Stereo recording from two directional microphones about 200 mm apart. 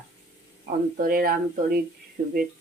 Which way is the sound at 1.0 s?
45° right (ahead or behind).